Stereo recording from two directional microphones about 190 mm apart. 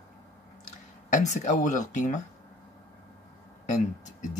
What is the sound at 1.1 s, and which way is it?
Speech, 40° left (ahead or behind).